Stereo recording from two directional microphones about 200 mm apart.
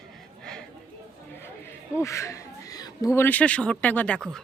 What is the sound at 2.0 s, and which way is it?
Speech, 15° left (ahead or behind).